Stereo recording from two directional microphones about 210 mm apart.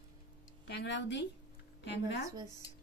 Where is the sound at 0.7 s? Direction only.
55° left (ahead or behind).